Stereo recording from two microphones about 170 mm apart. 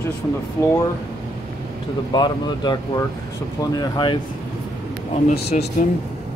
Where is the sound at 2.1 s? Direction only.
25° left (ahead or behind).